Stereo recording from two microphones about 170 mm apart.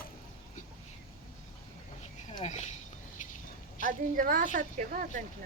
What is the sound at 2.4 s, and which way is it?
Speech, 40° left (ahead or behind).